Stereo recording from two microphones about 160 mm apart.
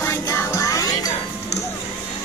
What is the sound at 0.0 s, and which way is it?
Music, 15° left (ahead or behind).